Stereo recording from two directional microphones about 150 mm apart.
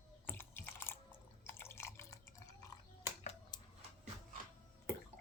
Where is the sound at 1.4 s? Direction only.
15° left (ahead or behind).